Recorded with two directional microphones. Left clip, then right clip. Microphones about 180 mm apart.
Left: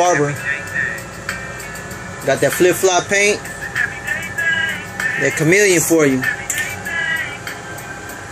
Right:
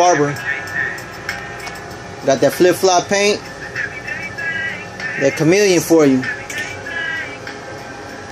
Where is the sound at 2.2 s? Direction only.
15° right (ahead or behind).